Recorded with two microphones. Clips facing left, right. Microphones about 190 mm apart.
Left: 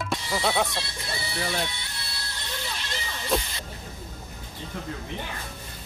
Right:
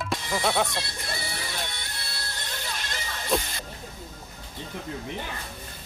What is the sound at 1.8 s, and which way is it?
Music, 50° right (ahead or behind).